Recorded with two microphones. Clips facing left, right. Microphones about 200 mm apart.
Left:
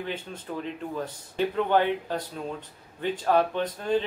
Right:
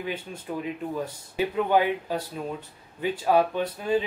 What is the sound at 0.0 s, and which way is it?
Speech, 10° right (ahead or behind).